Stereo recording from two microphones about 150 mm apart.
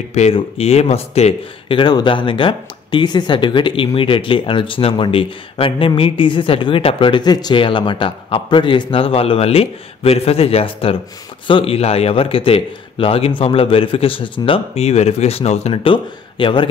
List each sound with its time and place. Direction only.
0.1 s speech: 45° left (ahead or behind)